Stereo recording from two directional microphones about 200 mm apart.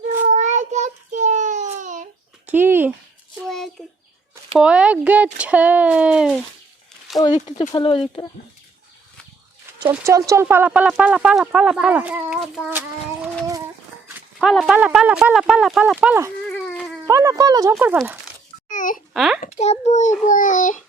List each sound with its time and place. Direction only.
0.3 s child singing: 35° right (ahead or behind)
2.5 s a sound: 10° right (ahead or behind)
3.8 s a sound: centre (ahead or behind)
4.5 s speech: 5° right (ahead or behind)
7.3 s a child's voice: 35° left (ahead or behind)
7.7 s speech: 25° left (ahead or behind)
9.8 s speech: 15° right (ahead or behind)
14.3 s speech: centre (ahead or behind)
16.6 s dog: centre (ahead or behind)
17.1 s speech: 15° right (ahead or behind)
17.9 s speech: 5° right (ahead or behind)
18.7 s a sound: 40° left (ahead or behind)
18.9 s a child's voice: centre (ahead or behind)
19.4 s a child's voice: 35° left (ahead or behind)